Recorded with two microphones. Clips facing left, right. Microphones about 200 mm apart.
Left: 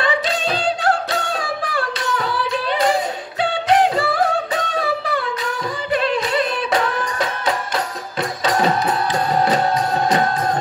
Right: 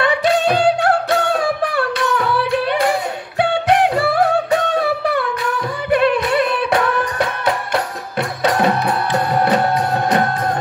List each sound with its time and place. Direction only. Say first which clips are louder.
0.0 s music: right 5 dB; 60° right (ahead or behind)